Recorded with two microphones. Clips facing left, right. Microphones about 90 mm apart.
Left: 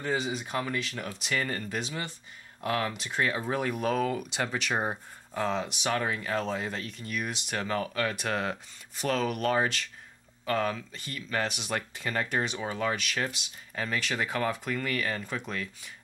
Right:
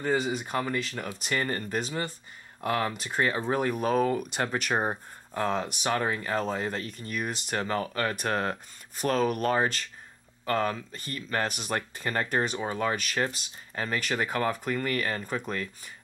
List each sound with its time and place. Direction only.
0.0 s speech: 45° right (ahead or behind)